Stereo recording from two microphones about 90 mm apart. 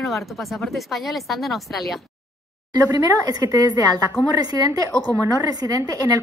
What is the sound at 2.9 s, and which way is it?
A woman's voice, 45° right (ahead or behind).